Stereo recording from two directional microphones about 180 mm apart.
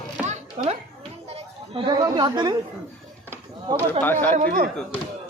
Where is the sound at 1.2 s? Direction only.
35° right (ahead or behind).